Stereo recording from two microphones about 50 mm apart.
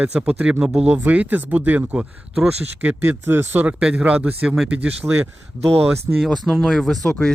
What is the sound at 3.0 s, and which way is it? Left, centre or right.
Speech, right.